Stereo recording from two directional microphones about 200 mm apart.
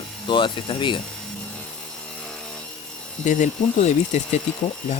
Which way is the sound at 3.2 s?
40° left (ahead or behind).